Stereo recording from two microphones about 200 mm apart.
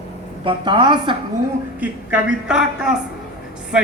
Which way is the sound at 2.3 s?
5° right (ahead or behind).